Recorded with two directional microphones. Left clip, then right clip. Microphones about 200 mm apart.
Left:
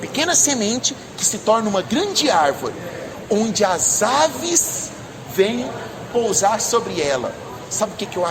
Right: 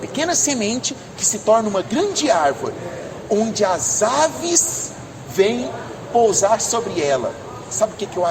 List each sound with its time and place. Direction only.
0.1 s a woman's voice: 20° left (ahead or behind)
6.2 s a woman's voice: 25° left (ahead or behind)